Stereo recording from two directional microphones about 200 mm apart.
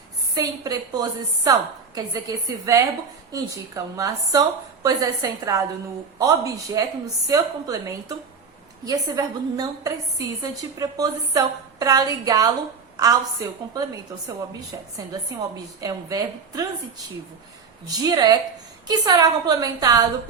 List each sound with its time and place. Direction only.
0.3 s a woman's voice: 20° right (ahead or behind)
3.9 s a woman's voice: 15° right (ahead or behind)
14.9 s a woman's voice: 20° right (ahead or behind)
17.8 s a woman's voice: 20° right (ahead or behind)